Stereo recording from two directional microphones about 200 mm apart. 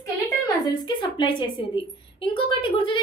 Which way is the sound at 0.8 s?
25° left (ahead or behind).